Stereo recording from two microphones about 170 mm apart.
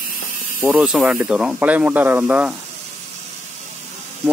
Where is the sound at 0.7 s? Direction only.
5° right (ahead or behind).